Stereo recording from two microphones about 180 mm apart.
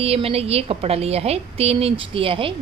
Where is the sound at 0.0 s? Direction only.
35° right (ahead or behind).